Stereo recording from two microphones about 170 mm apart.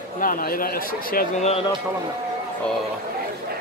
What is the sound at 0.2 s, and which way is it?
Speech, 55° left (ahead or behind).